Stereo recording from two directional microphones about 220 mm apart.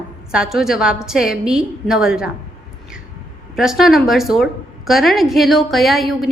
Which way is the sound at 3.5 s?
Centre (ahead or behind).